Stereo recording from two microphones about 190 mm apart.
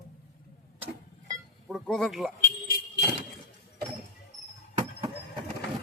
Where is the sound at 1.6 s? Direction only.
Centre (ahead or behind).